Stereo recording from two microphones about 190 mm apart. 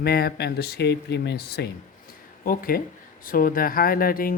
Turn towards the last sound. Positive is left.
turn(degrees=50)  # may be behind; listen again after turning